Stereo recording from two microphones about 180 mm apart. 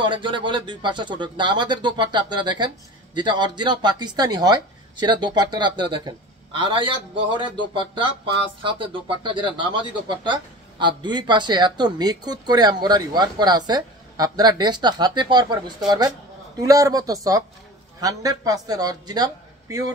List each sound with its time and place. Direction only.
0.0 s speech: 25° right (ahead or behind)